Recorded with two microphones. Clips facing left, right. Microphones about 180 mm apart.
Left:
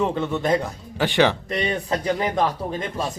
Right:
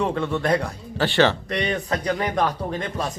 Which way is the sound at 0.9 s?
15° left (ahead or behind).